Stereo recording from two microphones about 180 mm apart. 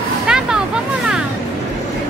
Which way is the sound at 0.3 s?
5° right (ahead or behind).